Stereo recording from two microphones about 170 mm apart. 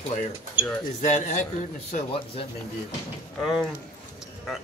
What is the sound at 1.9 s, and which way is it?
Speech, 30° left (ahead or behind).